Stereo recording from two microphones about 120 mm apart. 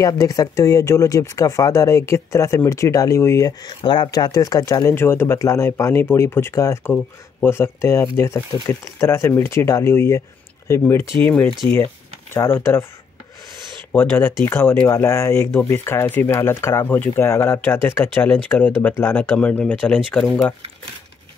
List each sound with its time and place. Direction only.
0.0 s speech: 30° left (ahead or behind)
3.8 s speech: 40° left (ahead or behind); by 12.8 s 20° left (ahead or behind)
13.9 s speech: 15° left (ahead or behind)